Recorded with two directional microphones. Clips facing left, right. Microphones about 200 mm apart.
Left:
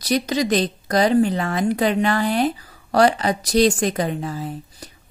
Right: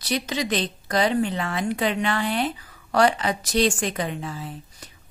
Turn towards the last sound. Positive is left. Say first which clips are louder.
# left 5 dB
turn(degrees=40)  # may be behind; listen again after turning